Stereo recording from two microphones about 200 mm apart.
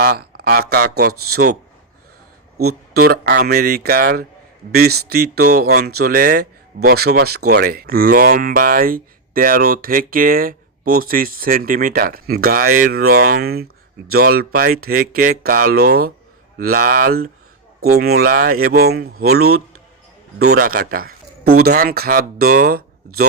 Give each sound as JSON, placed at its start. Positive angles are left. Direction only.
{"t": 0.0, "sound": "speech", "side_deg": -50}
{"t": 2.9, "sound": "speech", "side_deg": -50}
{"t": 19.4, "sound": "speech", "side_deg": -90}
{"t": 20.6, "sound": "a man's voice", "side_deg": -45}